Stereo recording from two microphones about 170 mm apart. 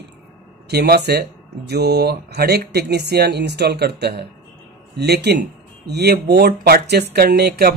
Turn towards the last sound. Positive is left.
turn(degrees=-70)  # may be behind; listen again after turning